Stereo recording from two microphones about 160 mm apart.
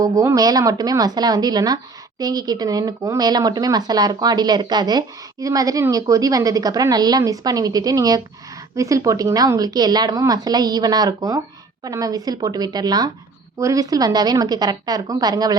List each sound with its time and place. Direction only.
0.0 s speech: 20° right (ahead or behind)